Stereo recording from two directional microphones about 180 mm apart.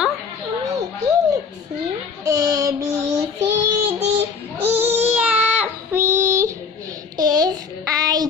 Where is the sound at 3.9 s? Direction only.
35° right (ahead or behind).